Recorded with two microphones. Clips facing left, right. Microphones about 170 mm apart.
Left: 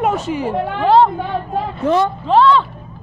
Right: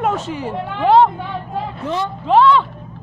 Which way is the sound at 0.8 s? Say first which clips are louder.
Even; 20° right (ahead or behind).